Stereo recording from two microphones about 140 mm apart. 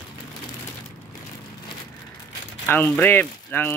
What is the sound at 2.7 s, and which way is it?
Speech, 15° left (ahead or behind).